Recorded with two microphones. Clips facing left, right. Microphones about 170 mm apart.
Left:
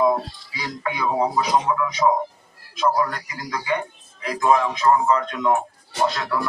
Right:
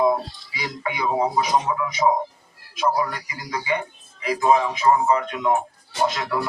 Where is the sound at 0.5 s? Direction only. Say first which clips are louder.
Left 1 dB; 15° right (ahead or behind).